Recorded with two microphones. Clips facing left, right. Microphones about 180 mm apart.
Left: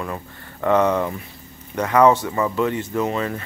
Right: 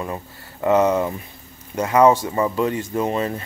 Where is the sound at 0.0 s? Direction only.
20° right (ahead or behind).